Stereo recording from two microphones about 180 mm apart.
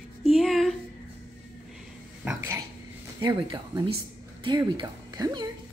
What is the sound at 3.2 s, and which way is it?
Speech, 25° right (ahead or behind).